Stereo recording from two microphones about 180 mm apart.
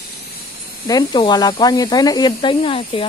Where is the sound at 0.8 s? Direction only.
25° left (ahead or behind).